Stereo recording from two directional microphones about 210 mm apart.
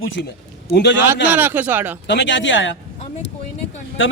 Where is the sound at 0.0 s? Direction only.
60° left (ahead or behind).